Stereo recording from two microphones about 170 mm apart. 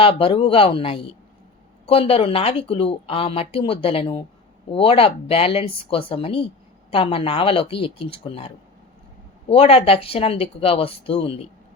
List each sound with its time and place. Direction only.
0.0 s speech: 35° left (ahead or behind)